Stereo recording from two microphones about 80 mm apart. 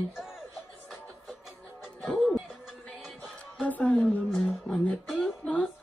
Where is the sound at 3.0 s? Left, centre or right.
Centre.